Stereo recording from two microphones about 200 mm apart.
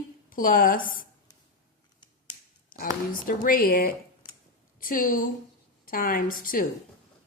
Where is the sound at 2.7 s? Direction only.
45° left (ahead or behind).